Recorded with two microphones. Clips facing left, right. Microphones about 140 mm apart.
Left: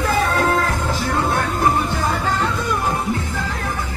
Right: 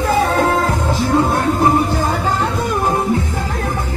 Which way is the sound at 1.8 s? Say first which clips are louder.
Right 3 dB; 45° right (ahead or behind).